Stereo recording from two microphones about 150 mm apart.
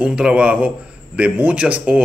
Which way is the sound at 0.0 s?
5° right (ahead or behind).